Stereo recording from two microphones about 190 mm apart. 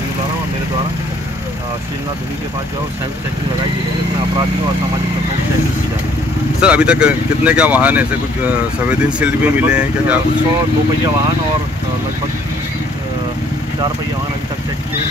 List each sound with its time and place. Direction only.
6.6 s speech: 5° right (ahead or behind)